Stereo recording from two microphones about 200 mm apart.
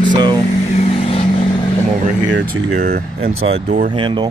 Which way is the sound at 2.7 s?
50° right (ahead or behind).